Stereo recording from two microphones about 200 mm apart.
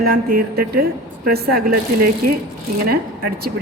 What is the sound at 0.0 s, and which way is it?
A woman's voice, 50° right (ahead or behind).